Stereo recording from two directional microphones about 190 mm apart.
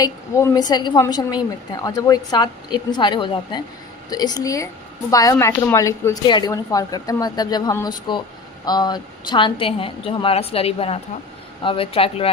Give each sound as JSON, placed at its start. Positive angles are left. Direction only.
{"t": 0.0, "sound": "speech", "side_deg": 15}